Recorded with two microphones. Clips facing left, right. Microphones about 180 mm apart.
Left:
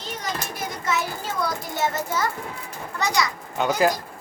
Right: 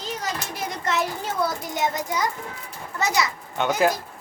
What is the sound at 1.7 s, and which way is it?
Speech, 15° right (ahead or behind).